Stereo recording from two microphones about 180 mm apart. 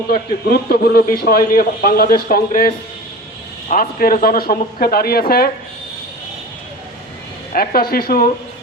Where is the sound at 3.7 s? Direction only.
50° left (ahead or behind).